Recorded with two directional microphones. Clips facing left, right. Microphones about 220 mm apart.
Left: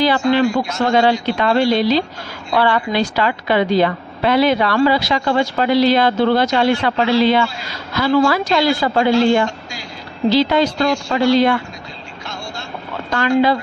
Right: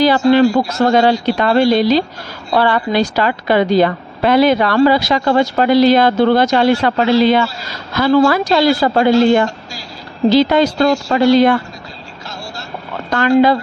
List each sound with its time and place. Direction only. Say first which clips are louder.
0.7 s a woman's voice: right 3 dB; 40° right (ahead or behind)
13.1 s a woman's voice: right 4 dB; 45° right (ahead or behind)